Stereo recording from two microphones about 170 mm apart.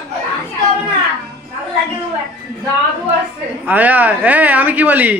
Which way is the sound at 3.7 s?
10° right (ahead or behind).